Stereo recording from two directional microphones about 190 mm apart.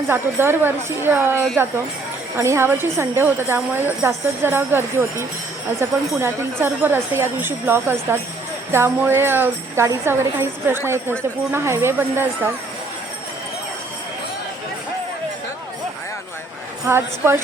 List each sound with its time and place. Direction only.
0.1 s jingle bell: 10° right (ahead or behind)
2.4 s jingle bell: 15° right (ahead or behind)
16.9 s jingle bell: 15° right (ahead or behind)